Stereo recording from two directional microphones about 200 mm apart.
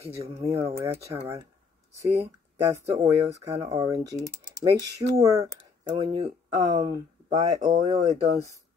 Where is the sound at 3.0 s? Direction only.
15° right (ahead or behind).